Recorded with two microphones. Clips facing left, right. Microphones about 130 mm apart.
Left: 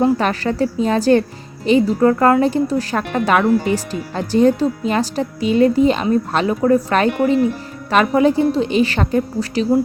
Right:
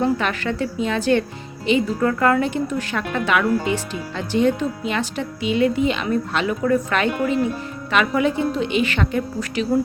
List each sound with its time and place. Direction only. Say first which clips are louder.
0.0 s speech: left 5 dB; 35° left (ahead or behind)